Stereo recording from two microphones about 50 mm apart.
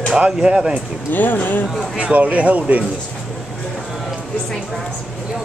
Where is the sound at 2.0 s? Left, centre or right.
Right.